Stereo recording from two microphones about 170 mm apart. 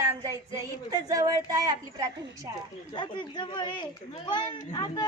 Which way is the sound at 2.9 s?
25° left (ahead or behind).